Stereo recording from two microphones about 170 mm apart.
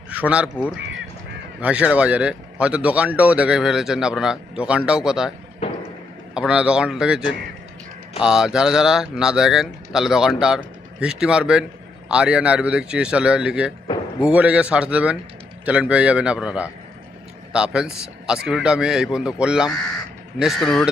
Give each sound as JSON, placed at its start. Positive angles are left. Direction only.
{"t": 0.1, "sound": "speech", "side_deg": -10}
{"t": 6.3, "sound": "a man's voice", "side_deg": -5}
{"t": 8.2, "sound": "a man's voice", "side_deg": -5}
{"t": 13.8, "sound": "a sound", "side_deg": 25}
{"t": 14.3, "sound": "a man's voice", "side_deg": -5}